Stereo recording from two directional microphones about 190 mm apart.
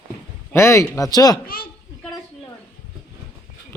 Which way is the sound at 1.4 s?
50° left (ahead or behind).